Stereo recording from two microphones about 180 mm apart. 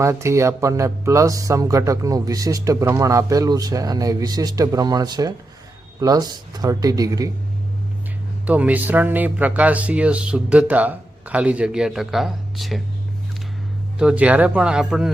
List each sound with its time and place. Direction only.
0.0 s speech: 15° right (ahead or behind)
8.4 s speech: 10° right (ahead or behind)
14.0 s speech: 5° right (ahead or behind)